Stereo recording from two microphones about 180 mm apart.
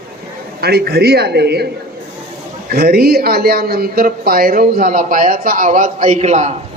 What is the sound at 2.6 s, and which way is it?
A man's voice, 60° right (ahead or behind).